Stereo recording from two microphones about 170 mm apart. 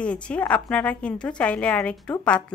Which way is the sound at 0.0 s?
5° left (ahead or behind).